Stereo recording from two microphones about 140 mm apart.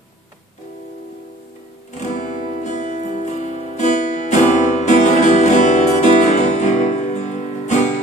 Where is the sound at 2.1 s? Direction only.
60° left (ahead or behind).